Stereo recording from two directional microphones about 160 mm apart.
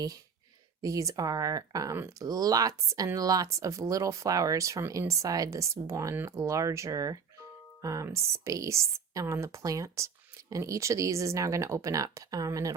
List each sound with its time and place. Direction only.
0.8 s speech: 20° right (ahead or behind)